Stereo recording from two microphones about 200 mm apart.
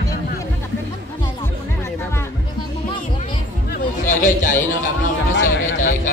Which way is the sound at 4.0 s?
40° left (ahead or behind).